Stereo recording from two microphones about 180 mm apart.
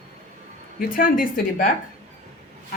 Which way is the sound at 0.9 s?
50° left (ahead or behind).